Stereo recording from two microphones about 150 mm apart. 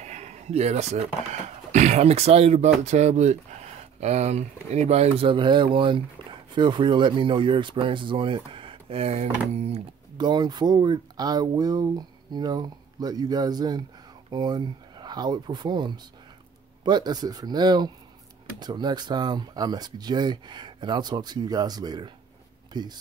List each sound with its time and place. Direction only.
0.0 s speech: 50° right (ahead or behind)
10.1 s speech: 30° right (ahead or behind)